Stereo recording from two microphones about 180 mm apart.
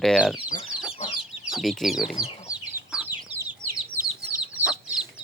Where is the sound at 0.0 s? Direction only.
Centre (ahead or behind).